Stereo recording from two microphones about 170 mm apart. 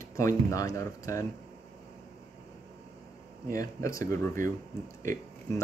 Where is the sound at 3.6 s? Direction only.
20° left (ahead or behind).